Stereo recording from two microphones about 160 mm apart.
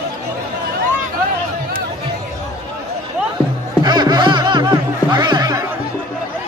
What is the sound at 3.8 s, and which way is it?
Music, 25° right (ahead or behind).